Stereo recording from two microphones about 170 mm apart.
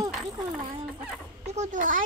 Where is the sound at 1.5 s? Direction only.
45° right (ahead or behind).